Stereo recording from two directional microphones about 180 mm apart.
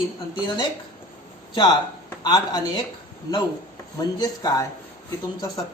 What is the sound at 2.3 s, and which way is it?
Speech, 20° left (ahead or behind).